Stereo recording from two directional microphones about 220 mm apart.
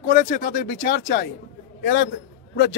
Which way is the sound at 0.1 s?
40° left (ahead or behind).